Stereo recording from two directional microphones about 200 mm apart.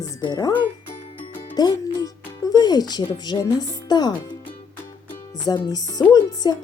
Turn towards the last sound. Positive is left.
turn(degrees=20)  # may be behind; listen again after turning